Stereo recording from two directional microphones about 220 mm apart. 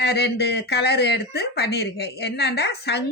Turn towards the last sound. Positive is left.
turn(degrees=50)  # may be behind; listen again after turning